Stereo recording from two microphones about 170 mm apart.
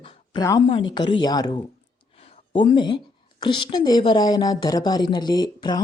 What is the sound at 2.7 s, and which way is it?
A woman's voice, 30° left (ahead or behind).